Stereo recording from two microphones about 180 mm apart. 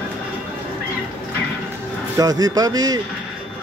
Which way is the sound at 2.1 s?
20° right (ahead or behind).